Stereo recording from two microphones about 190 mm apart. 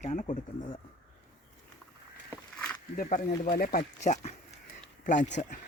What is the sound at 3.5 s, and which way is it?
Speech, 45° left (ahead or behind).